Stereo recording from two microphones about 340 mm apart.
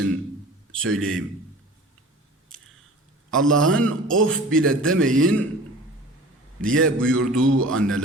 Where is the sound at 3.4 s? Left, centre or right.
Right.